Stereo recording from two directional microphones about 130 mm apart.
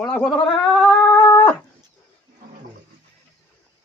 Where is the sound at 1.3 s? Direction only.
10° left (ahead or behind).